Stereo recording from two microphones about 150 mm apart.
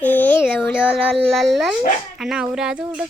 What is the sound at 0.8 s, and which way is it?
Speech, 5° right (ahead or behind).